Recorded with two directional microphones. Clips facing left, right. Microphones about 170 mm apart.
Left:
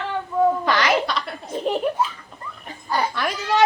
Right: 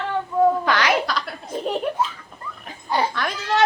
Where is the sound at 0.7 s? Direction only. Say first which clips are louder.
Even; centre (ahead or behind).